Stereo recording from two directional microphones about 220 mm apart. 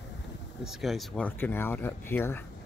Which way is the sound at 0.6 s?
Centre (ahead or behind).